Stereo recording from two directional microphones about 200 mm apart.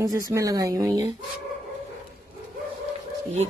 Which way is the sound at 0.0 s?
15° right (ahead or behind).